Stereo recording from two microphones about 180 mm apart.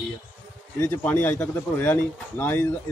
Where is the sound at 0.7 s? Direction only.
10° left (ahead or behind).